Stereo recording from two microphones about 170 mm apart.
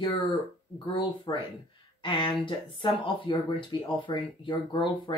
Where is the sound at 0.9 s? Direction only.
30° left (ahead or behind).